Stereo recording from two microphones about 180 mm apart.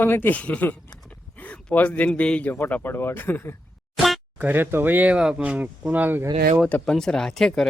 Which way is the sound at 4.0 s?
5° right (ahead or behind).